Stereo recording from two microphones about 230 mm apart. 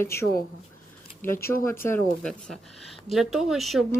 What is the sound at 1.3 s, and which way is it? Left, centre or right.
Speech, left.